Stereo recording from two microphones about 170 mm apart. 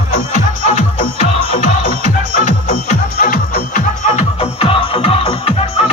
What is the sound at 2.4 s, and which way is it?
Music, 45° left (ahead or behind).